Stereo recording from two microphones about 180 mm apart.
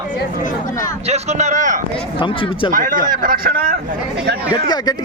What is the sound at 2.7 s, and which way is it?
Speech, 45° right (ahead or behind).